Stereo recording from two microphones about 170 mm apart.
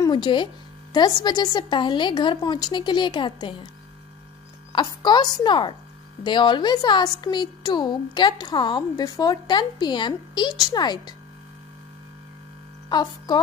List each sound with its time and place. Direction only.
0.0 s a woman's voice: 30° left (ahead or behind)
4.7 s a woman's voice: 25° left (ahead or behind)
12.9 s music: 25° left (ahead or behind)